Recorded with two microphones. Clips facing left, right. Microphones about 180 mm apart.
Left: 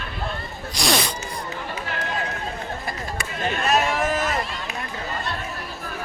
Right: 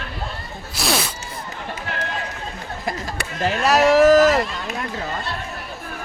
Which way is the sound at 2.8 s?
90° right.